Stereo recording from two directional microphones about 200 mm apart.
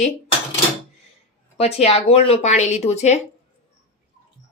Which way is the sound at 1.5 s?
30° left (ahead or behind).